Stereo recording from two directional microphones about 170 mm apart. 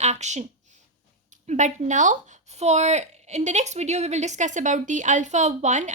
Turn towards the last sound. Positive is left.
turn(degrees=-45)  # may be behind; listen again after turning